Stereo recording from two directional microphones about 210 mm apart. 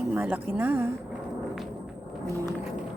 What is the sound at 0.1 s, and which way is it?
Speech, 10° right (ahead or behind).